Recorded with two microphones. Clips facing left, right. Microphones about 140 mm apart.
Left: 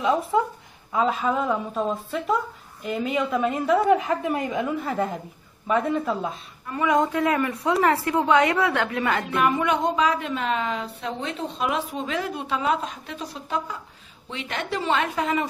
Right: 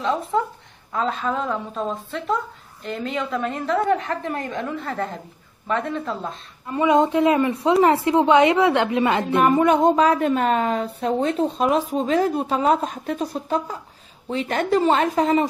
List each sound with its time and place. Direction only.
0.0 s a woman's voice: 5° left (ahead or behind)
6.7 s a woman's voice: 25° right (ahead or behind)
9.4 s a woman's voice: 40° right (ahead or behind)